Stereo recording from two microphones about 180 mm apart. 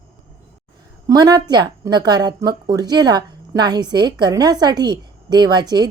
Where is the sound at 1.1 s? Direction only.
20° right (ahead or behind).